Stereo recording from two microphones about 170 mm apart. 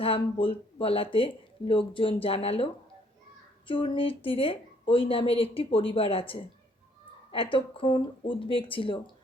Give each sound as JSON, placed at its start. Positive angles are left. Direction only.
{"t": 0.0, "sound": "speech", "side_deg": 35}
{"t": 3.7, "sound": "speech", "side_deg": 30}